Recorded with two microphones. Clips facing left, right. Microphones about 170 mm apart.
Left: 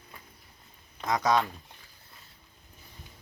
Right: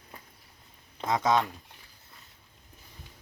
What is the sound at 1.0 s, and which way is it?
Speech, 25° right (ahead or behind).